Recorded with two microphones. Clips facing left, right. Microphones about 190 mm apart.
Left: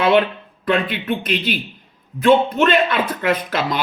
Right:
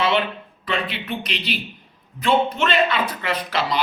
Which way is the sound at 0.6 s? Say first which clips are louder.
Left 7 dB; 50° left (ahead or behind).